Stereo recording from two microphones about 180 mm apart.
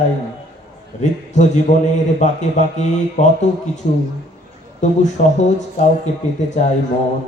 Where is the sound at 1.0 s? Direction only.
40° left (ahead or behind).